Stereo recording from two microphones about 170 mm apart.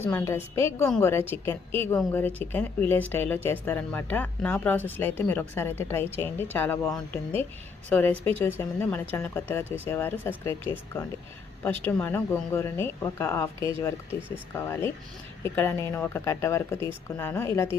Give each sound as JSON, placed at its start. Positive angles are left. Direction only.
{"t": 0.0, "sound": "a woman's voice", "side_deg": 10}
{"t": 11.9, "sound": "a woman's voice", "side_deg": 10}
{"t": 14.2, "sound": "speech", "side_deg": -10}
{"t": 14.5, "sound": "a woman's voice", "side_deg": 15}